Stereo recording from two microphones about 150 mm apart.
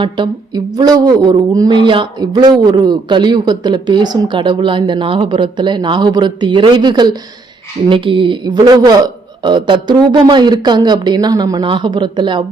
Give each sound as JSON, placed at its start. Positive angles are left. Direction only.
{"t": 0.0, "sound": "a woman's voice", "side_deg": -30}